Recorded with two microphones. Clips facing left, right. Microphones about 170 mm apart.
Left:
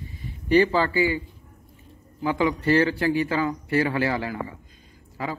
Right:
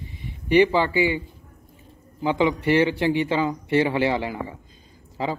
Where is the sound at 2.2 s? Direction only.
20° right (ahead or behind).